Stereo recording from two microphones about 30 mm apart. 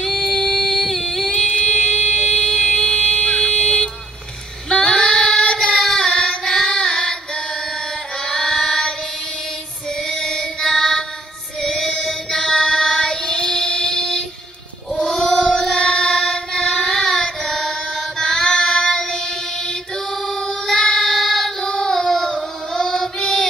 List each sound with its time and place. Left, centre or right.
0.0 s singing: centre
1.7 s a sound: left
4.6 s female singing: left
5.8 s child singing: centre
6.0 s carnatic music: left
8.3 s singing: centre
10.0 s music: left
11.6 s child singing: left
18.2 s child singing: left
21.6 s child singing: left